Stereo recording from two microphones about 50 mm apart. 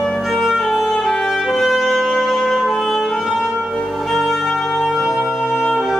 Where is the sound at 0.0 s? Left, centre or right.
Centre.